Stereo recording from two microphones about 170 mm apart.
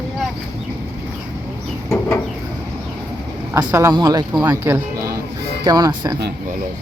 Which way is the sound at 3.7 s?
15° right (ahead or behind).